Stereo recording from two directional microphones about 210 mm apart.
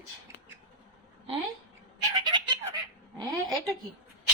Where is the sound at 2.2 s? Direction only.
20° right (ahead or behind).